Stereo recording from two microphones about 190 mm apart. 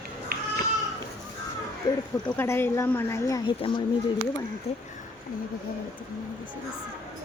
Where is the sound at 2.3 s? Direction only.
10° left (ahead or behind).